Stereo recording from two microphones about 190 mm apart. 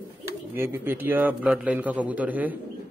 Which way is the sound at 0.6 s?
10° right (ahead or behind).